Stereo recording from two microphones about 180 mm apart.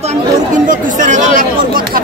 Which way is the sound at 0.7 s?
45° right (ahead or behind).